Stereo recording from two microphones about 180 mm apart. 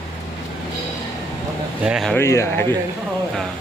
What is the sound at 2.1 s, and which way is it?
Speech, 15° left (ahead or behind).